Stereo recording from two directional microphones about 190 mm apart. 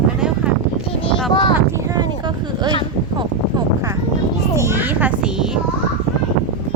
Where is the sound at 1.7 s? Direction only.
20° right (ahead or behind).